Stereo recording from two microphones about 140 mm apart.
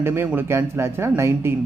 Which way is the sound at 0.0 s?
15° right (ahead or behind).